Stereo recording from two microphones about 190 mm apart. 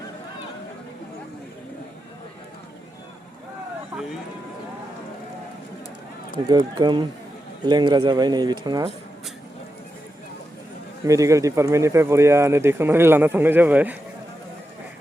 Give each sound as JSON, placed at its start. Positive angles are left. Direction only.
{"t": 6.5, "sound": "speech", "side_deg": -20}
{"t": 11.0, "sound": "speech", "side_deg": -15}